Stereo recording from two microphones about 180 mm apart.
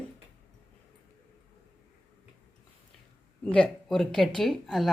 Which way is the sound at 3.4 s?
5° left (ahead or behind).